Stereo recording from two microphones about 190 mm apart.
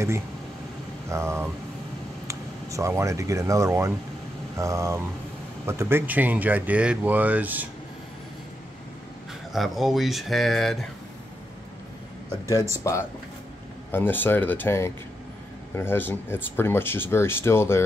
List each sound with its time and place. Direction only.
1.0 s speech: 15° right (ahead or behind)
9.5 s speech: centre (ahead or behind)
12.7 s speech: 15° left (ahead or behind)